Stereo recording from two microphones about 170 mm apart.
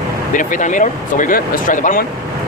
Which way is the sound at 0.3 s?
50° left (ahead or behind).